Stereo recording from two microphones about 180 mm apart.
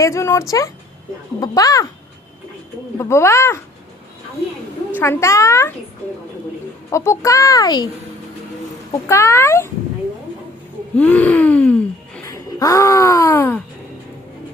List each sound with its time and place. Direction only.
0.0 s a child's voice: 15° left (ahead or behind)
3.0 s a child's voice: 15° left (ahead or behind)
4.9 s a child's voice: 15° left (ahead or behind)
6.9 s a child's voice: 15° left (ahead or behind)
8.9 s a child's voice: 15° left (ahead or behind)
10.9 s gasp: 5° left (ahead or behind)